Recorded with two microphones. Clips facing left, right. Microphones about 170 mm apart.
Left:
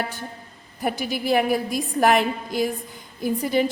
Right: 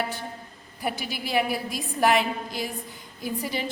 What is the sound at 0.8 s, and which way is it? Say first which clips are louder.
A woman's voice: left 5 dB; 45° left (ahead or behind).